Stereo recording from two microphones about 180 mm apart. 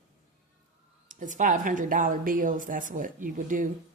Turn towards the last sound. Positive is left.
turn(degrees=-45)  # may be behind; listen again after turning